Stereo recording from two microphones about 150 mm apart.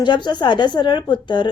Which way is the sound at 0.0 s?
30° left (ahead or behind).